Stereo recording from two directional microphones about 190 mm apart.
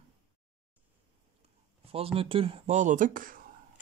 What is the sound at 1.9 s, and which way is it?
Speech, 30° right (ahead or behind).